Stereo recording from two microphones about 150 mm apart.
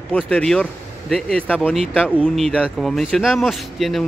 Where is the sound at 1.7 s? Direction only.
5° right (ahead or behind).